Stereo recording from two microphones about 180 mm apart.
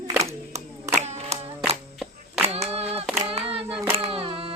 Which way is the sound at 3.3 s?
30° right (ahead or behind).